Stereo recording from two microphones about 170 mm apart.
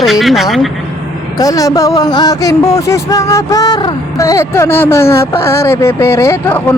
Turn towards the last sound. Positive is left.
turn(degrees=15)  # may be behind; listen again after turning